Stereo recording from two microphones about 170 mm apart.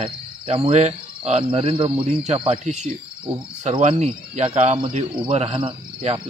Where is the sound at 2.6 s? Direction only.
45° right (ahead or behind).